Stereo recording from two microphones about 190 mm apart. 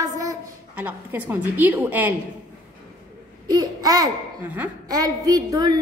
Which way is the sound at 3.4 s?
20° right (ahead or behind).